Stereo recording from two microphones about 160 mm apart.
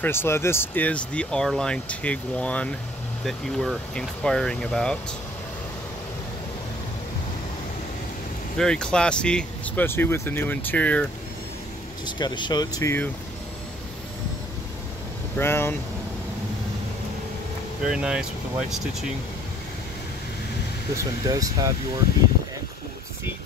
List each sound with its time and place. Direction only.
0.0 s speech: 15° left (ahead or behind)
8.5 s speech: 5° left (ahead or behind)
12.2 s speech: 30° left (ahead or behind)
15.3 s speech: 15° left (ahead or behind)
17.8 s speech: 5° right (ahead or behind)
20.9 s speech: 20° right (ahead or behind)